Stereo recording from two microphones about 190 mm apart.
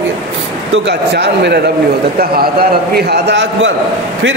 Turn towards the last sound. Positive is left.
turn(degrees=-65)  # may be behind; listen again after turning